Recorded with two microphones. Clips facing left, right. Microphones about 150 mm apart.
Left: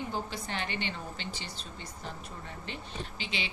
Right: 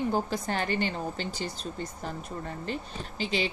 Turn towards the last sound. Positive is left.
turn(degrees=-40)  # may be behind; listen again after turning